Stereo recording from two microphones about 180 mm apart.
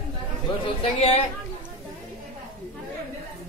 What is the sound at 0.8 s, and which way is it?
Speech, 35° left (ahead or behind).